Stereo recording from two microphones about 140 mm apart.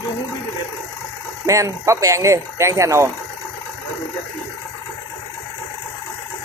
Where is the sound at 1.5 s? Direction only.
20° right (ahead or behind).